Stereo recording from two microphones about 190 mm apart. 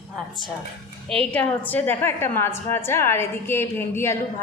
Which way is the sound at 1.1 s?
5° left (ahead or behind).